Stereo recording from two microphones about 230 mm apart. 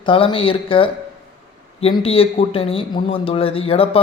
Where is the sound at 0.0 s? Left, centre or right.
Left.